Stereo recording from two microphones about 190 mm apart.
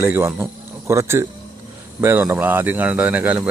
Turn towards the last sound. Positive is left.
turn(degrees=-10)  # may be behind; listen again after turning